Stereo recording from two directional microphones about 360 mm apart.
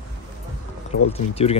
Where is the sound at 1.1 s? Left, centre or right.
Centre.